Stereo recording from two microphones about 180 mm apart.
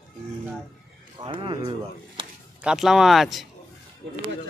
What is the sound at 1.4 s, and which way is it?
Speech, 20° right (ahead or behind).